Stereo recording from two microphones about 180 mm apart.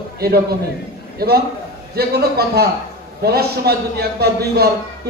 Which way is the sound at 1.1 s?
60° right (ahead or behind).